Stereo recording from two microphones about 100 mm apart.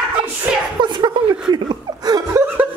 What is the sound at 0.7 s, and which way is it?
Chuckle, 50° right (ahead or behind).